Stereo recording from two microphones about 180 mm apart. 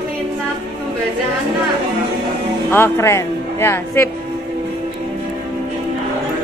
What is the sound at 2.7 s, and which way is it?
Speech, 15° left (ahead or behind).